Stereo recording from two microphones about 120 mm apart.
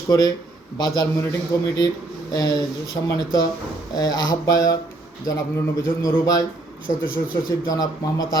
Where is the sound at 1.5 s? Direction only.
30° left (ahead or behind).